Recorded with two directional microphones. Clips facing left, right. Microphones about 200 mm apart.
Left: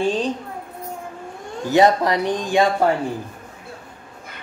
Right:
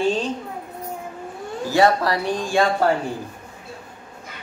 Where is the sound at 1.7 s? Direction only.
20° left (ahead or behind).